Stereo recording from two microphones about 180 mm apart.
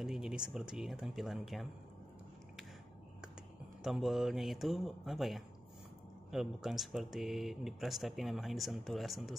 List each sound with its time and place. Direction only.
0.0 s speech: centre (ahead or behind)
3.8 s speech: centre (ahead or behind)